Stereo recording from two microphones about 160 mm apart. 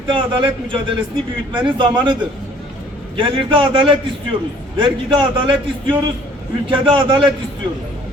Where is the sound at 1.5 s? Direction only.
30° right (ahead or behind).